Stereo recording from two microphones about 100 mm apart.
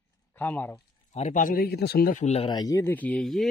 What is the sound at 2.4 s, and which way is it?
Speech, 40° left (ahead or behind).